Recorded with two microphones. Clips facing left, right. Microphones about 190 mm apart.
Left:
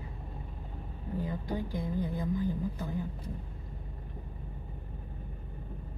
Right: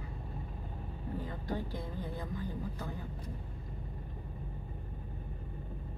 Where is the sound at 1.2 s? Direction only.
15° left (ahead or behind).